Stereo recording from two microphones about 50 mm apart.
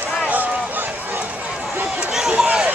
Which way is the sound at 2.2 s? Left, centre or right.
Centre.